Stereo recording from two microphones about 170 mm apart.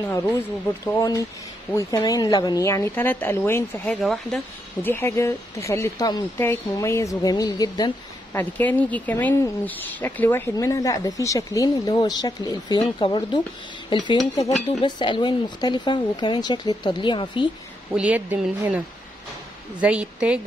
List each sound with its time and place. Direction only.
0.8 s speech: 20° left (ahead or behind); by 4.4 s centre (ahead or behind)
4.8 s speech: 15° left (ahead or behind)
8.3 s speech: 10° left (ahead or behind); by 17.5 s 25° left (ahead or behind)
17.9 s speech: 10° right (ahead or behind)
19.8 s speech: 5° right (ahead or behind)